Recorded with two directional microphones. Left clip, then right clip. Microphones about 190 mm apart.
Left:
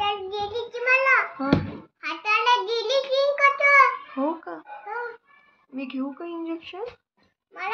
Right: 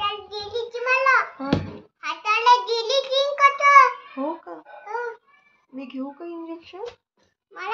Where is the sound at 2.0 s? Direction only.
15° right (ahead or behind).